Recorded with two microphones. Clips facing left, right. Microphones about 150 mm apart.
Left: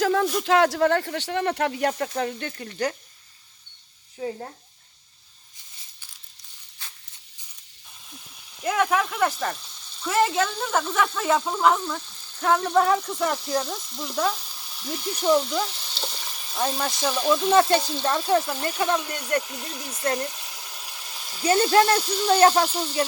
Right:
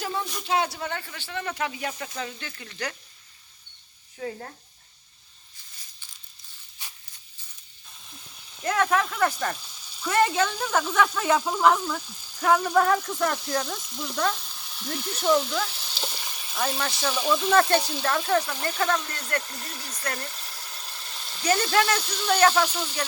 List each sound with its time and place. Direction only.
0.0 s a sound: 90° left
0.4 s speech: 90° left; by 2.5 s 55° left (ahead or behind)
2.5 s speech: 40° left (ahead or behind)
4.2 s speech: 15° left (ahead or behind)
8.6 s speech: 5° left (ahead or behind)
20.3 s frying: 5° left (ahead or behind)
21.4 s speech: 25° left (ahead or behind)